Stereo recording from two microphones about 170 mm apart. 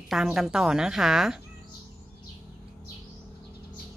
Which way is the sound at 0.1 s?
5° right (ahead or behind).